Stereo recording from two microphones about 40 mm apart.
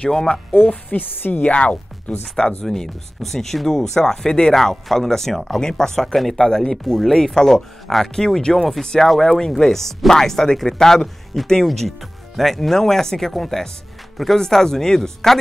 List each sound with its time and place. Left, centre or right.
0.3 s speech: left
1.2 s a woman's voice: left
1.5 s speech: left
2.3 s speech: centre
9.2 s speech: centre